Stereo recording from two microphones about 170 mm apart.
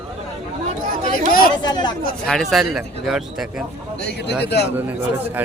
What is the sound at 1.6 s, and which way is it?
Speech, 25° left (ahead or behind).